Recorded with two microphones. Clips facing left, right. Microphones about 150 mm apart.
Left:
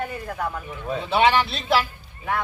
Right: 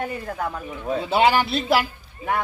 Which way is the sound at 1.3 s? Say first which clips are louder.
Right 1 dB; 10° right (ahead or behind).